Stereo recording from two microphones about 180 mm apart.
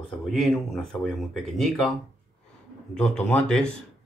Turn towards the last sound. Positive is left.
turn(degrees=5)  # may be behind; listen again after turning